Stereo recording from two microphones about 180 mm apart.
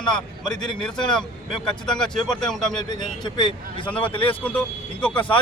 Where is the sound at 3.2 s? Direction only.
25° left (ahead or behind).